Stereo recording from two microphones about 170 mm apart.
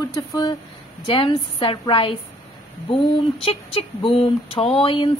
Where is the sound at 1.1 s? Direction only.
30° left (ahead or behind).